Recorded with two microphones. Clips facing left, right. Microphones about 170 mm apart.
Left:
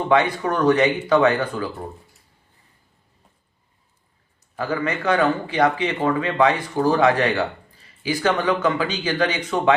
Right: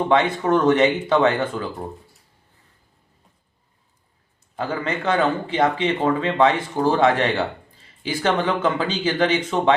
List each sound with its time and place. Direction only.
0.1 s a man's voice: 25° right (ahead or behind)
4.5 s a man's voice: 25° right (ahead or behind)